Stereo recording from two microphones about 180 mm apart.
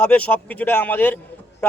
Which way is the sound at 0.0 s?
10° left (ahead or behind).